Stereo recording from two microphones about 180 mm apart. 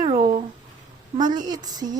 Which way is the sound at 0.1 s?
25° right (ahead or behind).